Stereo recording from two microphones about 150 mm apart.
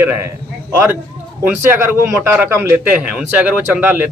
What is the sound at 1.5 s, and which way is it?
A man's voice, 15° right (ahead or behind).